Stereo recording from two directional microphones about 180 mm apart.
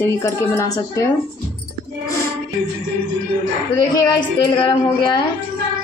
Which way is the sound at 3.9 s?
25° left (ahead or behind).